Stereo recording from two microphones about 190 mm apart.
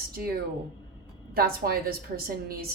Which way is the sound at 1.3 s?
50° right (ahead or behind).